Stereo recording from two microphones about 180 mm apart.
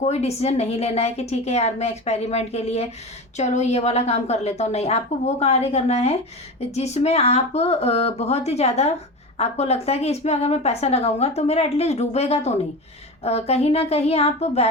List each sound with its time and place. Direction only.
0.0 s a woman's voice: 35° left (ahead or behind)